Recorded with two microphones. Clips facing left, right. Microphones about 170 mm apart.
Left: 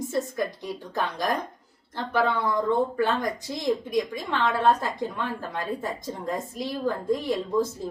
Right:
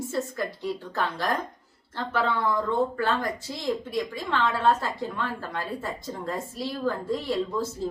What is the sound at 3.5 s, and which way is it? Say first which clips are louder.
A woman's voice: left 4 dB; 15° left (ahead or behind).